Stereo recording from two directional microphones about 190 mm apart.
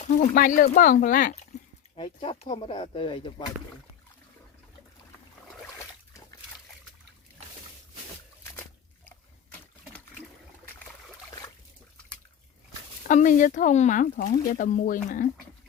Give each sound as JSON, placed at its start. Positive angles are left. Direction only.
{"t": 0.2, "sound": "speech", "side_deg": 45}
{"t": 2.0, "sound": "speech", "side_deg": 30}
{"t": 13.1, "sound": "speech", "side_deg": 40}